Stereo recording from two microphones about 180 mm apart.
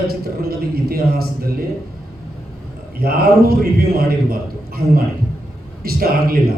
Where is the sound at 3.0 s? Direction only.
55° right (ahead or behind).